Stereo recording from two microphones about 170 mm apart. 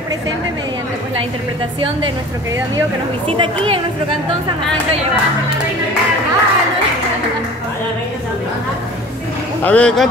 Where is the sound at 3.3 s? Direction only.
30° right (ahead or behind).